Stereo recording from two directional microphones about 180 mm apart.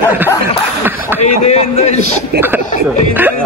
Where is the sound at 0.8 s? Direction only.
10° right (ahead or behind).